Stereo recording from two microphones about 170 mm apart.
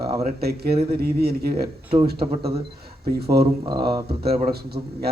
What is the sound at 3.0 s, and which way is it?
Speech, 65° right (ahead or behind).